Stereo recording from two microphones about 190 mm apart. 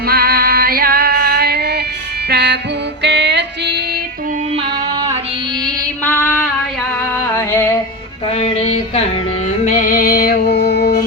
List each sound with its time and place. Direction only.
0.1 s music: 55° right (ahead or behind)
4.5 s music: 25° right (ahead or behind)
6.1 s female singing: 10° left (ahead or behind)
7.3 s music: 15° left (ahead or behind)
8.3 s music: 30° left (ahead or behind)
9.6 s music: 45° left (ahead or behind)